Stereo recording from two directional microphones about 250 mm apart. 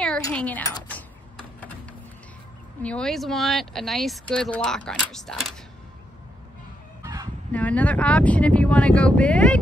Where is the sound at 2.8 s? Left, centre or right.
Centre.